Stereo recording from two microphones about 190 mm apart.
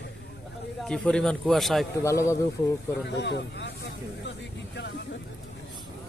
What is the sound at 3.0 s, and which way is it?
Speech, 65° left (ahead or behind).